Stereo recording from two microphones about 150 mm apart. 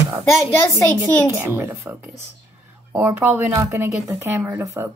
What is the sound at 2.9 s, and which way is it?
Speech, 10° right (ahead or behind).